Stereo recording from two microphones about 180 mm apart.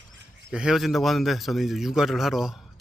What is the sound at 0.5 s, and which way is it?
Speech, 5° right (ahead or behind).